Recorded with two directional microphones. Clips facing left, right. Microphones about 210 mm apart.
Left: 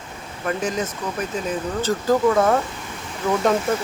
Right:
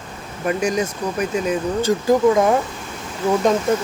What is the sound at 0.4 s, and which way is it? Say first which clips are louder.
Speech: right 4 dB; 15° right (ahead or behind).